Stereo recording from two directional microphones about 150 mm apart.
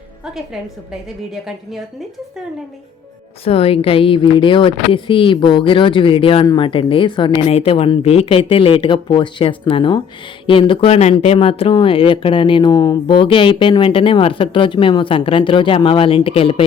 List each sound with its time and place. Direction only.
1.3 s a woman's voice: 5° right (ahead or behind)
3.4 s speech: 40° left (ahead or behind)